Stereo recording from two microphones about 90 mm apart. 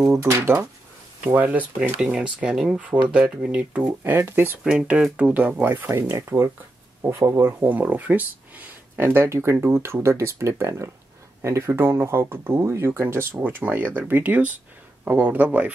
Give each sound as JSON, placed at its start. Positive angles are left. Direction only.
{"t": 0.0, "sound": "speech", "side_deg": -30}
{"t": 1.2, "sound": "speech", "side_deg": -15}
{"t": 4.0, "sound": "speech", "side_deg": -25}
{"t": 4.6, "sound": "speech", "side_deg": -10}
{"t": 7.6, "sound": "speech", "side_deg": -20}